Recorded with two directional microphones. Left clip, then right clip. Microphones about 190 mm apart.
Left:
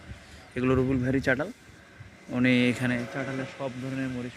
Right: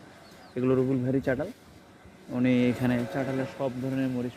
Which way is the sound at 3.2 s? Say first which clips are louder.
Right 3 dB; 35° right (ahead or behind).